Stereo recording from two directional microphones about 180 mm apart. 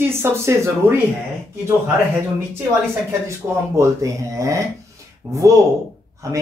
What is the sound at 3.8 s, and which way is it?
A woman's voice, 15° right (ahead or behind).